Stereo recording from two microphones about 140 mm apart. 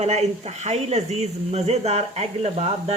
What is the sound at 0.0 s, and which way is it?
Speech, 50° right (ahead or behind).